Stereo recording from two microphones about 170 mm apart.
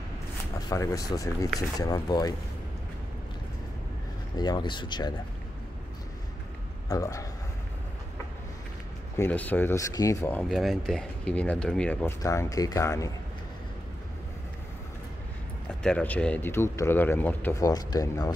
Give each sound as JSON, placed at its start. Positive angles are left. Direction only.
{"t": 0.6, "sound": "speech", "side_deg": 20}
{"t": 4.4, "sound": "speech", "side_deg": 25}
{"t": 6.9, "sound": "speech", "side_deg": 20}
{"t": 9.1, "sound": "speech", "side_deg": 10}
{"t": 10.5, "sound": "speech", "side_deg": 0}
{"t": 15.8, "sound": "speech", "side_deg": 5}